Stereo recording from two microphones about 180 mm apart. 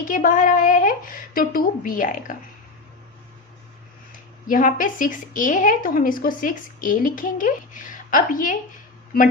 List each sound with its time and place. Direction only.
0.1 s a woman's voice: 50° left (ahead or behind)
4.4 s a woman's voice: 50° left (ahead or behind)